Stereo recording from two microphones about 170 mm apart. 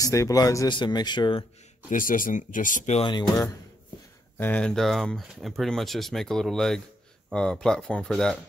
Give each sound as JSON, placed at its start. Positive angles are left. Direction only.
{"t": 0.0, "sound": "speech", "side_deg": 20}
{"t": 1.9, "sound": "speech", "side_deg": 50}
{"t": 3.0, "sound": "speech", "side_deg": 25}
{"t": 4.4, "sound": "speech", "side_deg": 10}